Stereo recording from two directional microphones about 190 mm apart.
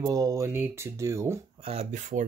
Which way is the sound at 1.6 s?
35° right (ahead or behind).